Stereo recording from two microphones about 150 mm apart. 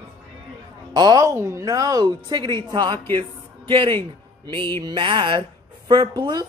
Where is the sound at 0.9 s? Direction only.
25° right (ahead or behind).